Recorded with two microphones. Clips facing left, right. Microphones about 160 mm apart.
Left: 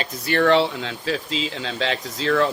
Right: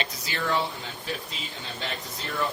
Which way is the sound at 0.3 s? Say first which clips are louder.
Left 12 dB; 70° left (ahead or behind).